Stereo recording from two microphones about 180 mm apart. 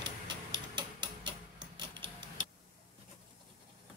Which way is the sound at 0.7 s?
25° right (ahead or behind).